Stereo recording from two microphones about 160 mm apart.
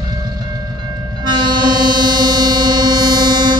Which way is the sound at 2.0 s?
25° right (ahead or behind).